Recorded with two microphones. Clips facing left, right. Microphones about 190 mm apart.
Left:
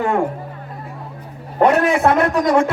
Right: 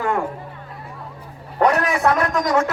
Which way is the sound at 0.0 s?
25° left (ahead or behind).